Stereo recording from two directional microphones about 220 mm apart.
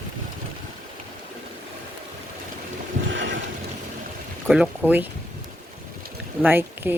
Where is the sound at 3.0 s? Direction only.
55° right (ahead or behind).